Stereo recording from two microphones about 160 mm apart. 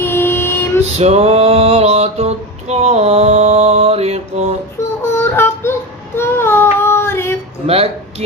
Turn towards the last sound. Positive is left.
turn(degrees=-40)  # may be behind; listen again after turning